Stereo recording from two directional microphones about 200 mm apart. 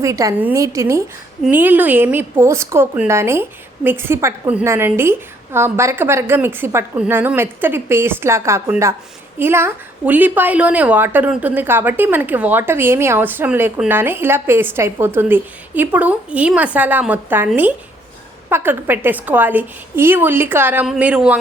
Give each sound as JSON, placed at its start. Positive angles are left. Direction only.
{"t": 0.0, "sound": "a woman's voice", "side_deg": -15}